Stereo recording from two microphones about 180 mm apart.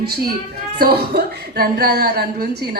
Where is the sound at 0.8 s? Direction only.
60° right (ahead or behind).